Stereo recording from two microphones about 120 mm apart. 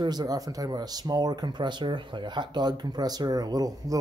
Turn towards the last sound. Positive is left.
turn(degrees=-30)  # may be behind; listen again after turning